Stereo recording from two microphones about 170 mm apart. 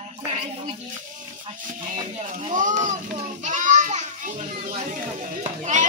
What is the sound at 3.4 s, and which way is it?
Children playing, 45° right (ahead or behind).